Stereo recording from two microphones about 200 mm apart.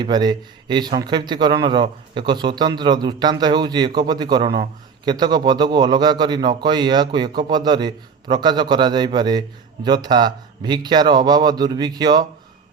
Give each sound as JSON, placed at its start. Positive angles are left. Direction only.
{"t": 0.0, "sound": "a man's voice", "side_deg": -20}